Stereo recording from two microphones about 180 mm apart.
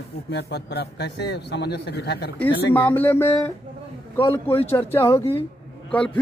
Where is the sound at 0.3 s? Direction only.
70° left (ahead or behind).